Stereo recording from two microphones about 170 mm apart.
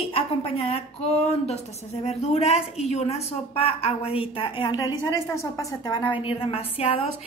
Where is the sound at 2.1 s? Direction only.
40° left (ahead or behind).